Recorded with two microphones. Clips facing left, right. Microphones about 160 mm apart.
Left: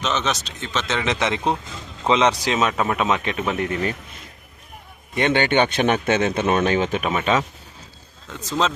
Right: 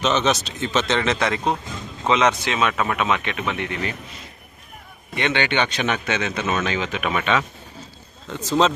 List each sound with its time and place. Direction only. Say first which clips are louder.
0.0 s speech: right 4 dB; centre (ahead or behind)
0.9 s a man's voice: right 1 dB; 15° left (ahead or behind); by 3.9 s 40° left (ahead or behind)
5.1 s speech: left 4 dB; 45° left (ahead or behind)
7.0 s a man's voice: left 1 dB; 30° left (ahead or behind)